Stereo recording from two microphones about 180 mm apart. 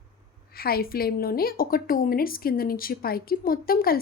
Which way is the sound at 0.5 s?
55° left (ahead or behind).